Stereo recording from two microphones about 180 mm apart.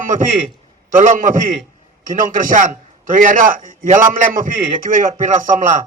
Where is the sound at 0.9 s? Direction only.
45° right (ahead or behind).